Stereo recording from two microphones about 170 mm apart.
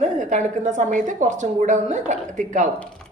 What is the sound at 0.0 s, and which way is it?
A woman's voice, 45° right (ahead or behind).